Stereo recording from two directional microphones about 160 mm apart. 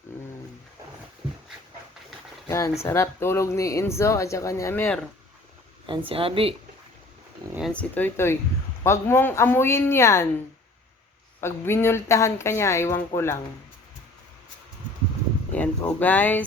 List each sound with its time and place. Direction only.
2.5 s speech: 20° left (ahead or behind)
6.1 s a woman's voice: 35° right (ahead or behind)
7.7 s speech: 10° left (ahead or behind)
11.3 s speech: 15° left (ahead or behind)
15.5 s speech: 10° left (ahead or behind)